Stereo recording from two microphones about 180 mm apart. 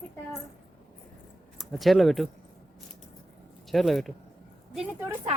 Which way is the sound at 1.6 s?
Centre (ahead or behind).